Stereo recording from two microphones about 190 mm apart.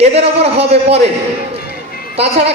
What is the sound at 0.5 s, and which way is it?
Speech, 30° right (ahead or behind).